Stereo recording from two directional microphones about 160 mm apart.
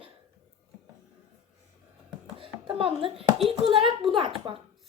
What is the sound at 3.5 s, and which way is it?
Speech, 35° right (ahead or behind).